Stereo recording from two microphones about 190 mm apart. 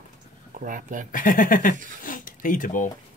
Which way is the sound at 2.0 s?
45° left (ahead or behind).